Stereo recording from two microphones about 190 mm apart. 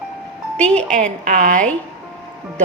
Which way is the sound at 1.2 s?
45° right (ahead or behind).